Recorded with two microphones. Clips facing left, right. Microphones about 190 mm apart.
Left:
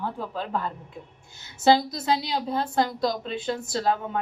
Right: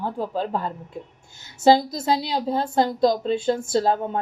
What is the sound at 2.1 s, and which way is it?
A woman's voice, 30° right (ahead or behind).